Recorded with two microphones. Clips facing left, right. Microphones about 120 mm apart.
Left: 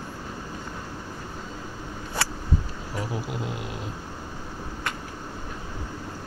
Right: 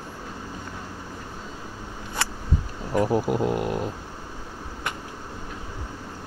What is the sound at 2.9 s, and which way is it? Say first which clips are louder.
Speech: right 10 dB; 50° right (ahead or behind).